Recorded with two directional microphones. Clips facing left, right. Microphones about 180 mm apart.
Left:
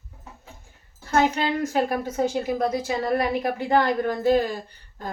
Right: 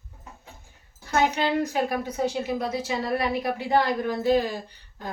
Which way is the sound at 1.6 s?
45° left (ahead or behind).